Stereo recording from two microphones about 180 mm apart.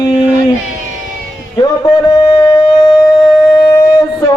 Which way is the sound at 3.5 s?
20° left (ahead or behind).